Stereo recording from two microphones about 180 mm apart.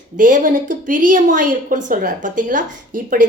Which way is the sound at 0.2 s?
45° right (ahead or behind).